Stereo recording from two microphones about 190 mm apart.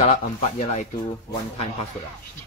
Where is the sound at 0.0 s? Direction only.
35° left (ahead or behind).